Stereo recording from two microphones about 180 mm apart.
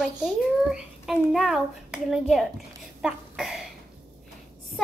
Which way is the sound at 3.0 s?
5° right (ahead or behind).